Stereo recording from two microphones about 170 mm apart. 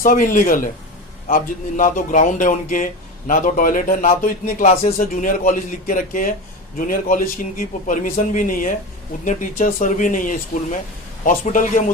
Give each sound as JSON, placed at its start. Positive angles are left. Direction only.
{"t": 0.0, "sound": "a man's voice", "side_deg": 50}